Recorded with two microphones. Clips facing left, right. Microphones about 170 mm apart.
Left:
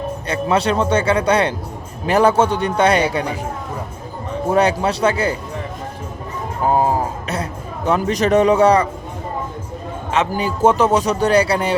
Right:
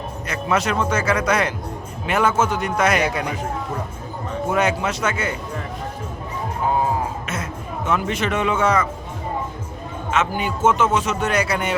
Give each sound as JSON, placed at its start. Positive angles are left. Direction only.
{"t": 0.3, "sound": "a man's voice", "side_deg": 30}
{"t": 4.4, "sound": "a man's voice", "side_deg": 35}
{"t": 6.6, "sound": "music", "side_deg": 40}
{"t": 7.9, "sound": "a man's voice", "side_deg": 35}
{"t": 10.1, "sound": "a man's voice", "side_deg": 35}